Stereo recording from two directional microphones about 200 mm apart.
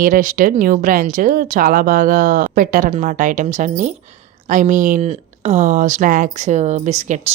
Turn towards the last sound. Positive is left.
turn(degrees=-35)  # may be behind; listen again after turning